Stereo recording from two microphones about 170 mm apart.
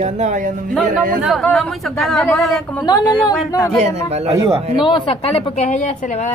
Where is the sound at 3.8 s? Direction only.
40° right (ahead or behind).